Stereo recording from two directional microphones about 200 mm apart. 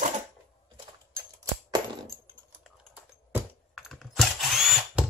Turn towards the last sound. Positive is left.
turn(degrees=0)  # may be behind; listen again after turning